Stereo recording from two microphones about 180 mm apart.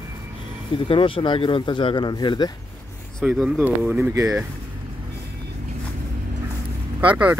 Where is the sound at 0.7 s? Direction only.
30° left (ahead or behind).